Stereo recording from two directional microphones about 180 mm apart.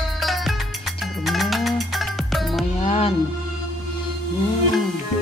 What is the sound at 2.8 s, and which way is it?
Music, 35° left (ahead or behind).